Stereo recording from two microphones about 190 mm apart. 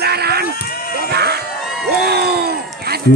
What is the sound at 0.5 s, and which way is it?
Speech, 50° left (ahead or behind).